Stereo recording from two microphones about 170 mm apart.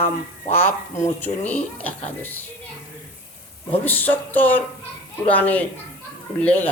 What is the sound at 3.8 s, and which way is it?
Speech, 10° left (ahead or behind).